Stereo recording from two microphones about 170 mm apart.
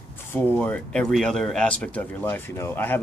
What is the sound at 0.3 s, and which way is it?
Speech, 10° left (ahead or behind).